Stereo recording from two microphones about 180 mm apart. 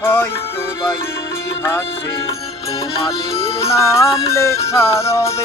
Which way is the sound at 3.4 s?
30° left (ahead or behind).